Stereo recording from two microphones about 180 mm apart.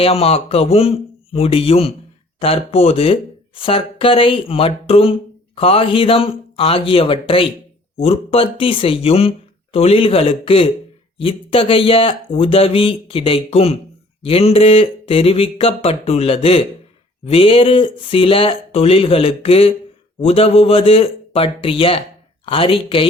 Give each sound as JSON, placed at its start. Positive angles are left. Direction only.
{"t": 0.0, "sound": "speech", "side_deg": 35}